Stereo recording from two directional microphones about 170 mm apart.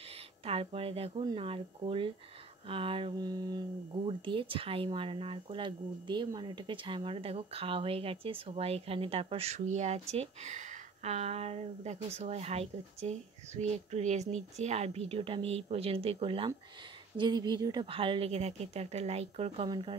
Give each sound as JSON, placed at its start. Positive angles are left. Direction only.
{"t": 0.5, "sound": "speech", "side_deg": -35}